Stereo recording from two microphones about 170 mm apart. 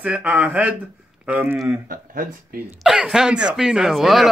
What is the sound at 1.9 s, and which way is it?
Speech, 55° right (ahead or behind).